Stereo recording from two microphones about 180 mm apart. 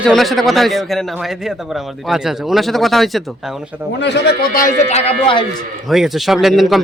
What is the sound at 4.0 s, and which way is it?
Speech, 65° left (ahead or behind).